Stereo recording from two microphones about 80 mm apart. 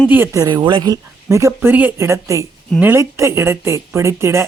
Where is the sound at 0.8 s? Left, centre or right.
Right.